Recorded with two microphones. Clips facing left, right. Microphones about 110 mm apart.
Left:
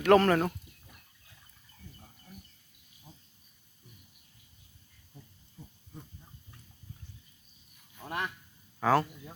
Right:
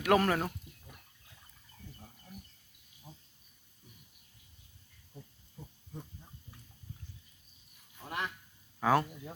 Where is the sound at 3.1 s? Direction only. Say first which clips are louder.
Right 2 dB; 10° right (ahead or behind).